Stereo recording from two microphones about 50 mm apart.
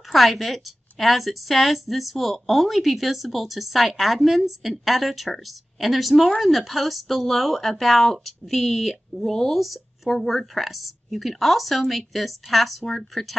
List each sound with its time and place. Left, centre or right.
0.1 s a woman's voice: centre